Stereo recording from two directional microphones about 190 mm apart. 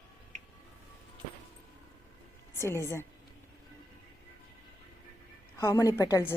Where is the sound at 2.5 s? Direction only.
15° left (ahead or behind).